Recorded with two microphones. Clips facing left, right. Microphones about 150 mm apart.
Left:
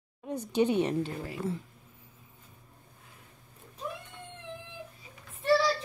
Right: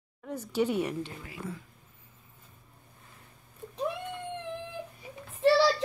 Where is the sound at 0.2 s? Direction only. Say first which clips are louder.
Left 2 dB; 20° left (ahead or behind).